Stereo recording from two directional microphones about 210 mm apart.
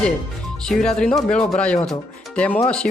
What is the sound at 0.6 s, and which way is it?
Speech, 5° left (ahead or behind).